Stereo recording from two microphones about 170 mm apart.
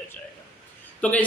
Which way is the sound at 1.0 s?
5° left (ahead or behind).